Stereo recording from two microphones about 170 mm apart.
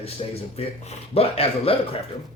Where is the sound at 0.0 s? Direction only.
35° left (ahead or behind).